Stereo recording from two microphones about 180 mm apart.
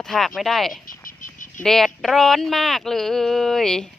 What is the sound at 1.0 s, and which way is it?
Frog, 45° left (ahead or behind).